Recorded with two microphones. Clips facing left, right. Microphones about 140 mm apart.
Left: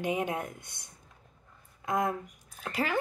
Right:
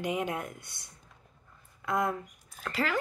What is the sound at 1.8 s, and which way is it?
Speech, 25° left (ahead or behind).